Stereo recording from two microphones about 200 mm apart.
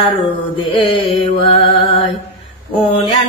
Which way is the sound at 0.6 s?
25° left (ahead or behind).